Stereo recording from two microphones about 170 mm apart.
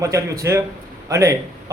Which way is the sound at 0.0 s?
20° right (ahead or behind).